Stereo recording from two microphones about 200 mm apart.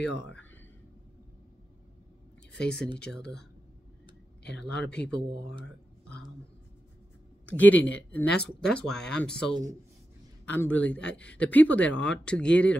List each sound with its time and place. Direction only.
2.5 s speech: 5° left (ahead or behind)
4.4 s speech: 55° left (ahead or behind)
4.8 s speech: 5° left (ahead or behind)
7.4 s a woman's voice: 10° left (ahead or behind)